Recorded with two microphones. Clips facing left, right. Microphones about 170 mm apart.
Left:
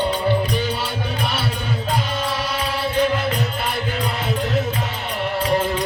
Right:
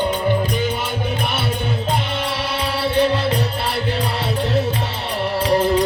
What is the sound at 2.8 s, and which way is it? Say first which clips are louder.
Music: right 3 dB; 30° right (ahead or behind).